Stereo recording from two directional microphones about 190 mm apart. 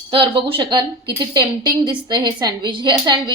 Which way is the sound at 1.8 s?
20° right (ahead or behind).